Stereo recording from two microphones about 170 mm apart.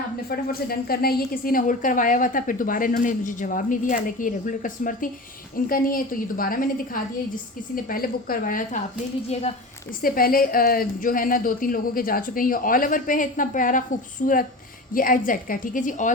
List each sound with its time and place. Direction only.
0.3 s a woman's voice: 60° left (ahead or behind)
10.0 s a woman's voice: 60° left (ahead or behind)